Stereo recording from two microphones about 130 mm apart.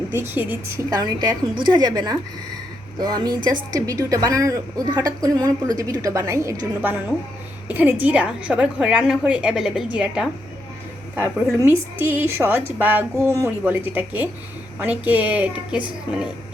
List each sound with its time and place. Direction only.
0.1 s a woman's voice: 15° right (ahead or behind)
0.9 s a woman's voice: 30° right (ahead or behind)
7.7 s a woman's voice: 15° right (ahead or behind)